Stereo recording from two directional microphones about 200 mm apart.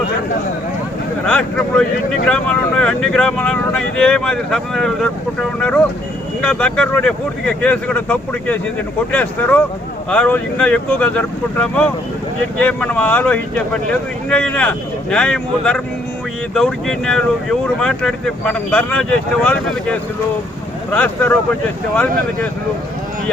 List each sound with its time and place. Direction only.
1.2 s speech: 5° left (ahead or behind)